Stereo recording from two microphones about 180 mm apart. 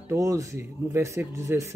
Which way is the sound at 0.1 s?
20° right (ahead or behind).